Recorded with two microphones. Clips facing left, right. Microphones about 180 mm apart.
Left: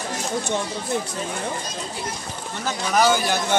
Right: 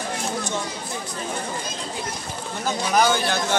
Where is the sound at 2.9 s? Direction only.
5° left (ahead or behind).